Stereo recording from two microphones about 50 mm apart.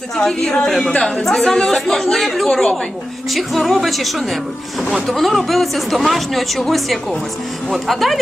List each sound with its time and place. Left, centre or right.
0.3 s speech: centre
0.9 s a woman's voice: centre
1.2 s speech: centre
3.3 s speech: centre